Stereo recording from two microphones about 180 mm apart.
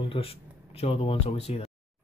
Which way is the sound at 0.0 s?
30° left (ahead or behind).